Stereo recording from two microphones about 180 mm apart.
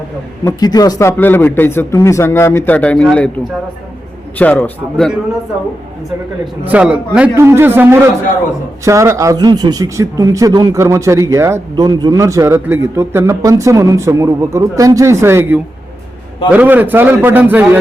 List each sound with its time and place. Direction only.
0.4 s speech: 20° left (ahead or behind); by 3.2 s 5° left (ahead or behind)
4.4 s speech: 10° left (ahead or behind)
6.7 s a man's voice: 10° right (ahead or behind)